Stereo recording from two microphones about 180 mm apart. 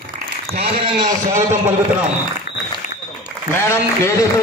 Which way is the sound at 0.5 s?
30° right (ahead or behind).